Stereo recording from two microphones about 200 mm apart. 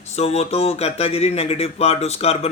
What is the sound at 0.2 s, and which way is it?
Speech, 30° left (ahead or behind).